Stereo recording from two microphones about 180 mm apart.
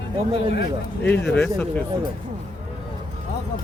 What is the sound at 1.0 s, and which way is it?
Speech, 10° left (ahead or behind).